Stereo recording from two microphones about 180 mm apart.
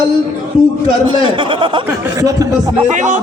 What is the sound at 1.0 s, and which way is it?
Speech, 25° right (ahead or behind).